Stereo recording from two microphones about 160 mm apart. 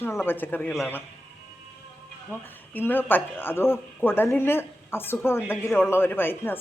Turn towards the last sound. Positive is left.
turn(degrees=15)  # may be behind; listen again after turning